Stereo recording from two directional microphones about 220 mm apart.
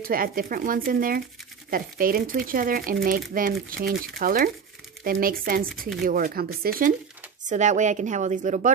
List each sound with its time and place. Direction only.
0.0 s speech: 40° right (ahead or behind)